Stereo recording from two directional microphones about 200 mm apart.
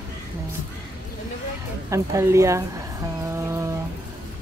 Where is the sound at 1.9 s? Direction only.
15° right (ahead or behind).